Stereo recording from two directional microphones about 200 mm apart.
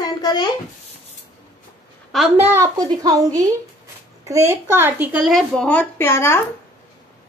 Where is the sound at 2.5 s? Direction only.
15° right (ahead or behind); by 6.4 s 10° left (ahead or behind).